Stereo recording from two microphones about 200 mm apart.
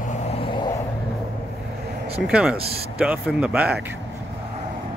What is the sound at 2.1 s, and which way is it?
Speech, 5° right (ahead or behind).